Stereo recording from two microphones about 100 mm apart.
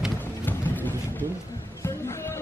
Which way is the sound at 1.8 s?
30° left (ahead or behind).